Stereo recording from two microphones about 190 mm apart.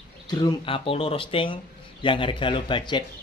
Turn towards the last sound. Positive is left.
turn(degrees=25)  # may be behind; listen again after turning